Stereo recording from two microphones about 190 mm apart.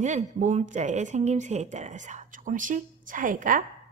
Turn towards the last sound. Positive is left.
turn(degrees=-45)  # may be behind; listen again after turning